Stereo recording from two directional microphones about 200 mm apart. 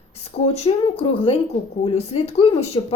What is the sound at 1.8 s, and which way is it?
Speech, 30° left (ahead or behind).